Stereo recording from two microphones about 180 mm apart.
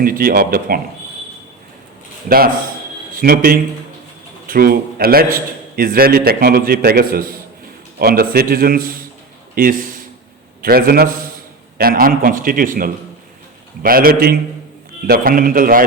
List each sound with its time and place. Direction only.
0.0 s a man's voice: 55° right (ahead or behind)
3.2 s a man's voice: 55° right (ahead or behind)